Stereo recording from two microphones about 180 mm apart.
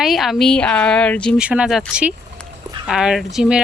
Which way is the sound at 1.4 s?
5° right (ahead or behind).